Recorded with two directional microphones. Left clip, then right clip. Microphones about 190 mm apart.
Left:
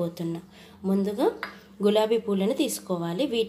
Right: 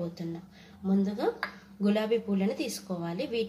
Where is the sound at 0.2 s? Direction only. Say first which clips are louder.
Left 6 dB; 35° left (ahead or behind).